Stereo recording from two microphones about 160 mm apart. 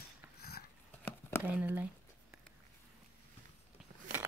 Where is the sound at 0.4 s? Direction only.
70° left (ahead or behind).